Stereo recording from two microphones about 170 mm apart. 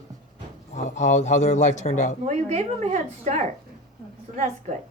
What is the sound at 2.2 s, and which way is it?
A woman's voice, 40° right (ahead or behind).